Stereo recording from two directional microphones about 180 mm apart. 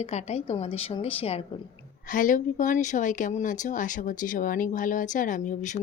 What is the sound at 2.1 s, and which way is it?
Speech, 45° left (ahead or behind).